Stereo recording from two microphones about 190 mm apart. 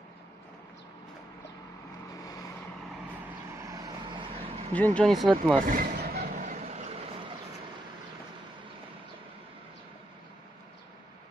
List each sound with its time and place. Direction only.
3.5 s vehicle: 15° right (ahead or behind)
4.7 s speech: 5° left (ahead or behind)
5.7 s a sound: 50° right (ahead or behind); by 6.9 s 35° right (ahead or behind)